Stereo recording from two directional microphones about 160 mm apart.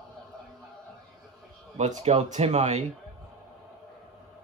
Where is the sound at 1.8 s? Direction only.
45° right (ahead or behind).